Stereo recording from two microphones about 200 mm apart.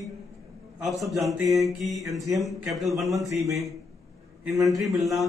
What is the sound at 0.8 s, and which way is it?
A man's voice, centre (ahead or behind).